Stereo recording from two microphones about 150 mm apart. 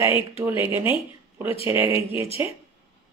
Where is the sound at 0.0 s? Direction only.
15° right (ahead or behind).